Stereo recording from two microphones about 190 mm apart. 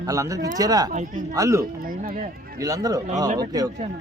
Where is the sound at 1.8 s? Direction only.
50° right (ahead or behind).